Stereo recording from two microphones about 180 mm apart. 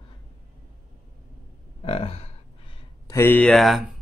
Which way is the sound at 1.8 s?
30° left (ahead or behind).